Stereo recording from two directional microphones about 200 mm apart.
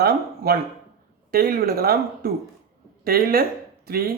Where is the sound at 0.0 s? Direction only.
50° right (ahead or behind).